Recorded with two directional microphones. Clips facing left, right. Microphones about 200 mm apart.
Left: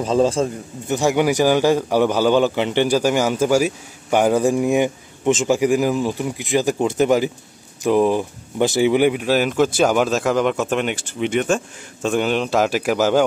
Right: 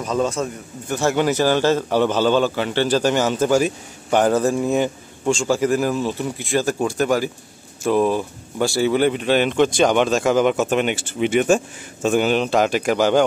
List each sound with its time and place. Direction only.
0.0 s a man's voice: 30° left (ahead or behind)
0.9 s a man's voice: 15° left (ahead or behind)